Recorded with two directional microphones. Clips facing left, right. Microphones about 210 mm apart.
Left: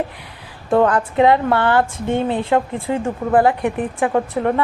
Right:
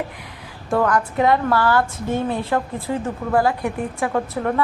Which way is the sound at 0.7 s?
25° left (ahead or behind).